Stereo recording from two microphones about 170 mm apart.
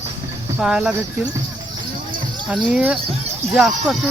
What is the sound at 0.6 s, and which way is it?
Speech, 5° right (ahead or behind).